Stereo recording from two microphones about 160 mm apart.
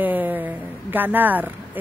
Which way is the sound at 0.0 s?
10° right (ahead or behind).